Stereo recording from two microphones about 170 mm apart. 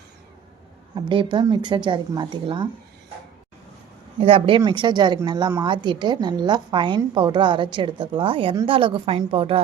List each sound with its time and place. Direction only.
0.9 s a woman's voice: 30° right (ahead or behind)
4.2 s a woman's voice: 35° right (ahead or behind)